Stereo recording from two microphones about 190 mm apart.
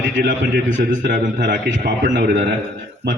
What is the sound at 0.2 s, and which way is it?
A man's voice, 50° right (ahead or behind).